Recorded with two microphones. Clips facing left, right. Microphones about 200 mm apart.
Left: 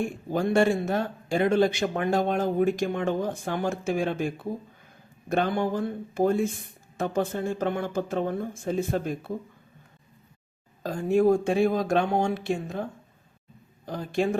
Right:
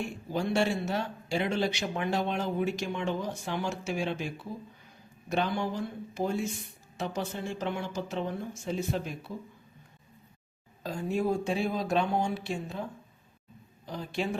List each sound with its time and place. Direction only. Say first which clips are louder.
0.0 s speech: left 5 dB; 50° left (ahead or behind)
10.8 s speech: left 8 dB; 50° left (ahead or behind)